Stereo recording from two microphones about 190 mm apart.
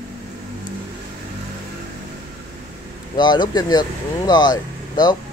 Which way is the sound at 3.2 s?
25° left (ahead or behind).